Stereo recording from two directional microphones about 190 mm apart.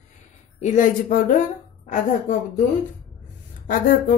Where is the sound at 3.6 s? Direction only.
45° left (ahead or behind).